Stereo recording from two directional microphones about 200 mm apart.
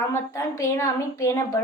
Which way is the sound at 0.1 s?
15° left (ahead or behind).